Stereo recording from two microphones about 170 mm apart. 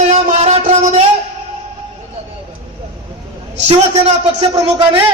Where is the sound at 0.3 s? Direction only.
40° right (ahead or behind).